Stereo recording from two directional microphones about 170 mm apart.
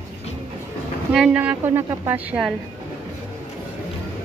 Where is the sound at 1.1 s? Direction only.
5° right (ahead or behind).